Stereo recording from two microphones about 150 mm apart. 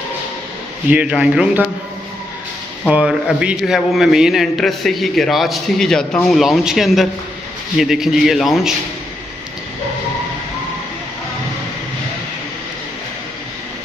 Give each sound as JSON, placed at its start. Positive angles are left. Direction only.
{"t": 0.8, "sound": "speech", "side_deg": -10}
{"t": 2.9, "sound": "a man's voice", "side_deg": -5}